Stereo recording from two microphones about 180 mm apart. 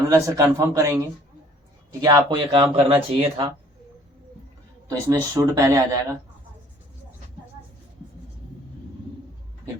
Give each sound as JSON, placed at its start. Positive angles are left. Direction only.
{"t": 0.1, "sound": "speech", "side_deg": -15}
{"t": 4.9, "sound": "speech", "side_deg": -20}